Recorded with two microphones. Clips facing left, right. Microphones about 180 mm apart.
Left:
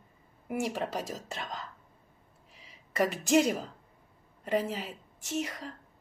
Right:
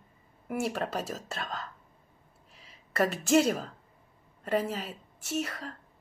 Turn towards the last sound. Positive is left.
turn(degrees=15)  # may be behind; listen again after turning